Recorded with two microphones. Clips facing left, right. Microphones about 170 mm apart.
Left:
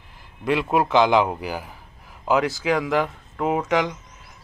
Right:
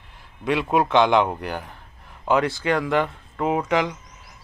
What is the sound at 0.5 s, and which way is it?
Speech, centre (ahead or behind).